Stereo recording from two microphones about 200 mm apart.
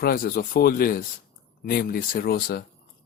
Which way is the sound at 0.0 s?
50° left (ahead or behind).